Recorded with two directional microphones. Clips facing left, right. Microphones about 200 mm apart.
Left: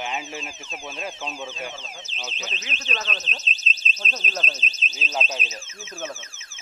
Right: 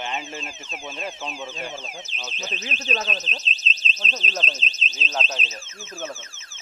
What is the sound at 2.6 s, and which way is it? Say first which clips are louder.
Speech: right 7 dB; 35° right (ahead or behind).